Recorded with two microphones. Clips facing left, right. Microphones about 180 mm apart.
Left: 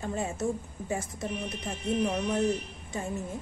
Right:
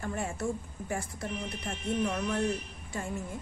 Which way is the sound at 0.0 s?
20° left (ahead or behind).